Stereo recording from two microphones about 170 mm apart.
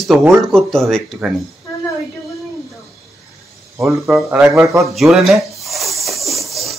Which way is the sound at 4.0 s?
Centre (ahead or behind).